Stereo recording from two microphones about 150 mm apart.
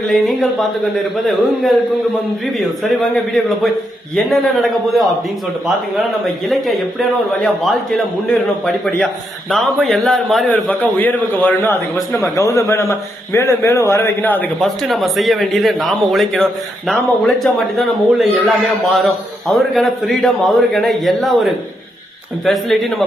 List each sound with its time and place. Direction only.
3.0 s speech: centre (ahead or behind)
7.4 s a man's voice: 5° left (ahead or behind)
14.6 s speech: centre (ahead or behind)
22.4 s speech: centre (ahead or behind)